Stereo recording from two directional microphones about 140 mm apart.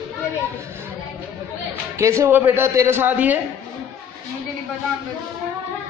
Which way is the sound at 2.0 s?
20° right (ahead or behind).